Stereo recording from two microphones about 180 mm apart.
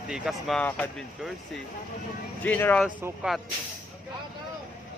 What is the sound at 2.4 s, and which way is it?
Speech, 10° left (ahead or behind).